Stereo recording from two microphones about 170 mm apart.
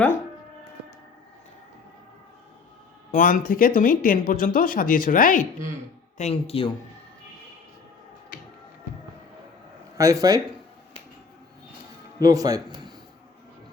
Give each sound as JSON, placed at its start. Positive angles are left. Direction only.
{"t": 3.1, "sound": "speech", "side_deg": 50}
{"t": 6.1, "sound": "speech", "side_deg": 40}
{"t": 10.0, "sound": "speech", "side_deg": -20}
{"t": 12.2, "sound": "speech", "side_deg": -20}